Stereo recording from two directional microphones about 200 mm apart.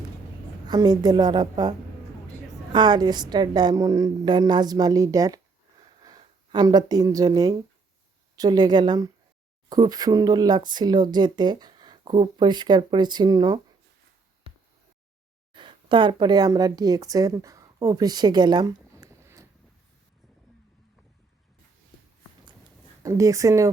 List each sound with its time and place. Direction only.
0.7 s speech: 20° right (ahead or behind)
2.7 s speech: 20° right (ahead or behind)
15.5 s a woman's voice: 25° right (ahead or behind)
23.0 s speech: 15° right (ahead or behind)